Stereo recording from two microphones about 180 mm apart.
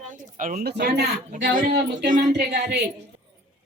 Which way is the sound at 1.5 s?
45° right (ahead or behind).